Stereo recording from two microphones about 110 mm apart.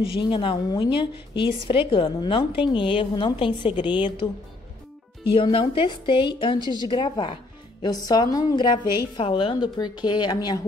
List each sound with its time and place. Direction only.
0.1 s a woman's voice: 50° left (ahead or behind)
5.3 s a woman's voice: 55° left (ahead or behind); by 8.6 s 35° left (ahead or behind)
9.1 s a woman's voice: 50° left (ahead or behind)